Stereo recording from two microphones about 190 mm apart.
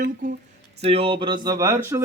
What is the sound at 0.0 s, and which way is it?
Speech, 45° right (ahead or behind).